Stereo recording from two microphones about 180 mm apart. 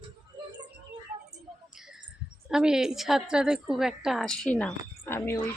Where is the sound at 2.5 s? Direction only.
5° right (ahead or behind).